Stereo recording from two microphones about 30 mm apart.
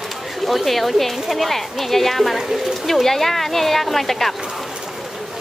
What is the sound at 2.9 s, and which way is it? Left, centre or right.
A woman's voice, centre.